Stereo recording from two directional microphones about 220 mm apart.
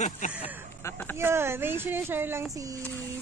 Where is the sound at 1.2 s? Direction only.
10° right (ahead or behind).